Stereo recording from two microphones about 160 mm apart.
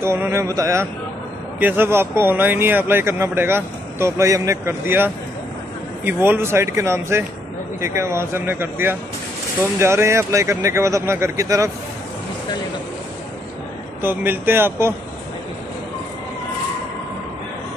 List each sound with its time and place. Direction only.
0.0 s speech: 15° right (ahead or behind)
14.0 s speech: 10° right (ahead or behind)